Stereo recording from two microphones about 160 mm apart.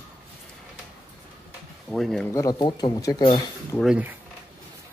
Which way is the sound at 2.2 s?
20° left (ahead or behind).